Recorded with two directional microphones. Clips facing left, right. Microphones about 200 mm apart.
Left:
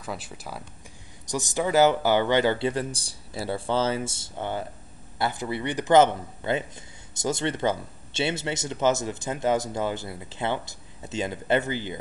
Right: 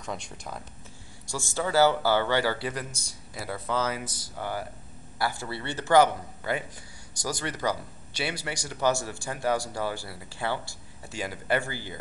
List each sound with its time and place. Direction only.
0.0 s speech: 5° left (ahead or behind)
1.2 s speech: 20° left (ahead or behind)